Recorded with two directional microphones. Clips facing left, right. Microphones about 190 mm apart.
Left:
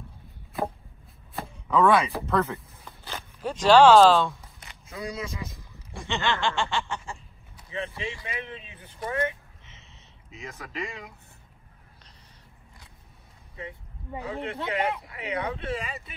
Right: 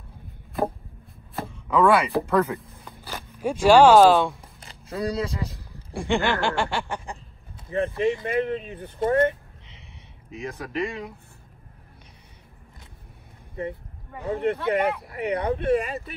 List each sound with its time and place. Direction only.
1.7 s speech: 10° right (ahead or behind)
2.8 s a sound: 10° right (ahead or behind)
4.3 s a sound: 30° right (ahead or behind)
5.9 s speech: 10° right (ahead or behind)
7.7 s speech: 55° right (ahead or behind)
10.4 s speech: 30° right (ahead or behind)
14.2 s speech: 55° right (ahead or behind)